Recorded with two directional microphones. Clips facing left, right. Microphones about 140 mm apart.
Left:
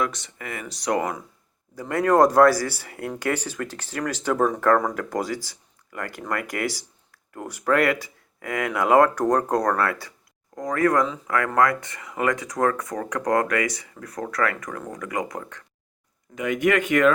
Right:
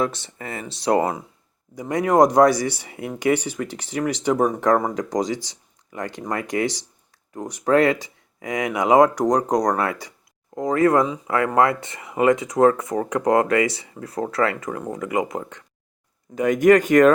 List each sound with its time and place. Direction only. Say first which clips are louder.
0.0 s speech: right 3 dB; 30° right (ahead or behind)
1.7 s speech: right 1 dB; 15° right (ahead or behind)
16.3 s speech: right 7 dB; 40° right (ahead or behind)